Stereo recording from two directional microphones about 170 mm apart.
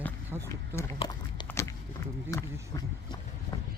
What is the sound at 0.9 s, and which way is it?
Speech, 30° left (ahead or behind).